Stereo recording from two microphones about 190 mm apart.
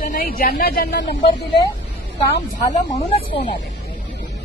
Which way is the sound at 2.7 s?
40° left (ahead or behind).